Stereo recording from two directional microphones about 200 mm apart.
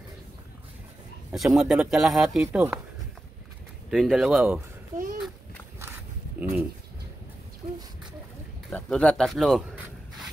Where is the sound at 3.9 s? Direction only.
Centre (ahead or behind).